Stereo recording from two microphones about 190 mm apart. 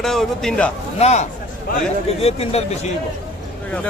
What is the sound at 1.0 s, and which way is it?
Speech, 35° left (ahead or behind).